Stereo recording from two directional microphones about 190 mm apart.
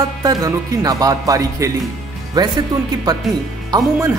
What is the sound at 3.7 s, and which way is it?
Speech, 20° right (ahead or behind).